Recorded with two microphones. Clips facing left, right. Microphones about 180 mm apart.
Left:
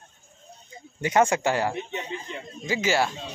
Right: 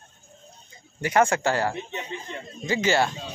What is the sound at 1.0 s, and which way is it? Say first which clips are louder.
Speech: even; 20° left (ahead or behind).